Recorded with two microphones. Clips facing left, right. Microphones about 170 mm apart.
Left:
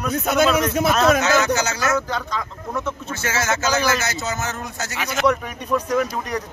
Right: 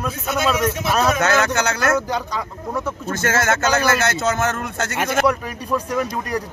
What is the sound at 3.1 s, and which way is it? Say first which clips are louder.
Speech: right 5 dB; 55° right (ahead or behind).